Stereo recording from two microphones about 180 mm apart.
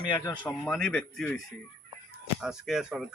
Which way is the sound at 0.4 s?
5° left (ahead or behind).